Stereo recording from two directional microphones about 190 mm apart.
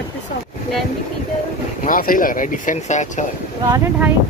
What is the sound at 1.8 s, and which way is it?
Speech, 45° left (ahead or behind).